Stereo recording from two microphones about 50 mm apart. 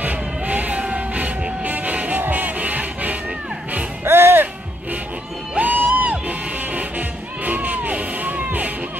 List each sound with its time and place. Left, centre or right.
0.0 s music: right
4.0 s music: right
5.6 s music: right